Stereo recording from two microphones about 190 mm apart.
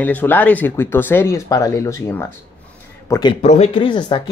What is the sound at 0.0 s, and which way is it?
A man's voice, 10° left (ahead or behind).